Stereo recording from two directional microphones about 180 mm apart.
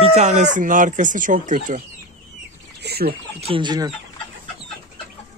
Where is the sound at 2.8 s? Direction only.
60° right (ahead or behind).